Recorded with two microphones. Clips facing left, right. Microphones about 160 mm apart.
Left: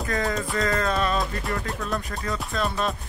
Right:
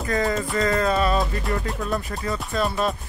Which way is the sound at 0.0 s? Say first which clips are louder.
Right 3 dB; centre (ahead or behind).